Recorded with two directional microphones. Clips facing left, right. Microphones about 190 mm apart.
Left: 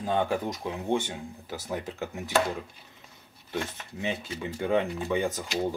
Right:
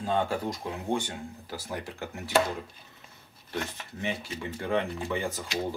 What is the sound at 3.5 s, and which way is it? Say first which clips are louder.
Speech: left 1 dB; 15° left (ahead or behind).